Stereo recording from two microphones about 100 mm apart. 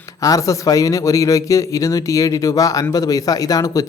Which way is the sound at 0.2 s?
35° left (ahead or behind).